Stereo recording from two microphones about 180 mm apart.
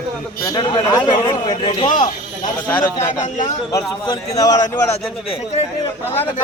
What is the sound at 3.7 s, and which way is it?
Speech, 20° left (ahead or behind).